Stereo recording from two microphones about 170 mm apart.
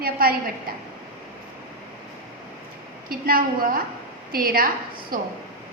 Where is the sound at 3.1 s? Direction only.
55° right (ahead or behind).